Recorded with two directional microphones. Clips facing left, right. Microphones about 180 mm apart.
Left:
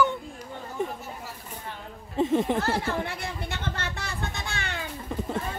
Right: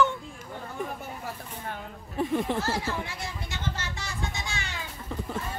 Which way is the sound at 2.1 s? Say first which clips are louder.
Left 4 dB; 25° left (ahead or behind).